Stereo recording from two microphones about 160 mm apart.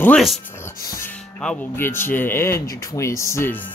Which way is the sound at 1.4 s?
10° left (ahead or behind).